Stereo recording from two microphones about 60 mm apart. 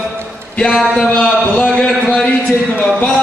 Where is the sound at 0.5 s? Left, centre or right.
Centre.